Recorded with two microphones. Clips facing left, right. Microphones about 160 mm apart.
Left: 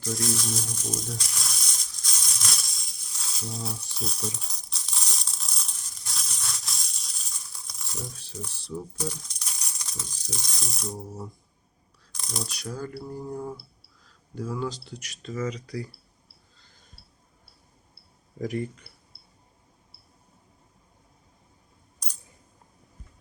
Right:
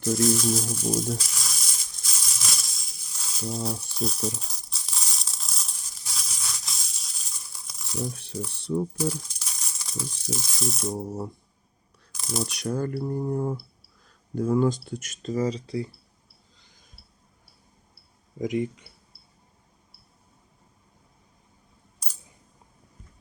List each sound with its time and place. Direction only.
0.1 s speech: centre (ahead or behind)
1.1 s a sound: centre (ahead or behind)
8.1 s speech: 60° right (ahead or behind)
9.0 s speech: 5° right (ahead or behind)
12.1 s shuffling cards: 5° right (ahead or behind)
12.5 s speech: 55° right (ahead or behind); by 15.9 s 25° right (ahead or behind)
18.3 s speech: 15° right (ahead or behind)